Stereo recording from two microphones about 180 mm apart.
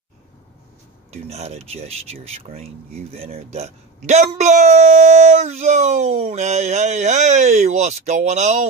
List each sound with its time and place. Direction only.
1.1 s speech: 35° right (ahead or behind)